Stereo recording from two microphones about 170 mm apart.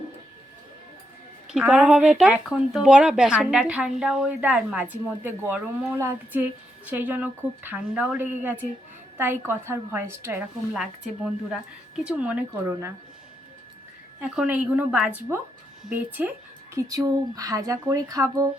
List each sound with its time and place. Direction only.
1.5 s a woman's voice: 5° right (ahead or behind)
10.8 s a woman's voice: centre (ahead or behind)
14.2 s a woman's voice: 5° right (ahead or behind)
16.7 s speech: 20° right (ahead or behind)